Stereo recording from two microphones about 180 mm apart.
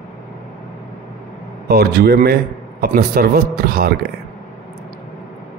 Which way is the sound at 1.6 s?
60° right (ahead or behind).